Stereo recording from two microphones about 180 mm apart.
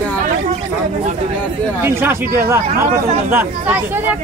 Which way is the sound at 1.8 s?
15° right (ahead or behind).